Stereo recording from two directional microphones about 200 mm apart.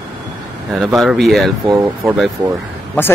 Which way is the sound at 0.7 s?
Centre (ahead or behind).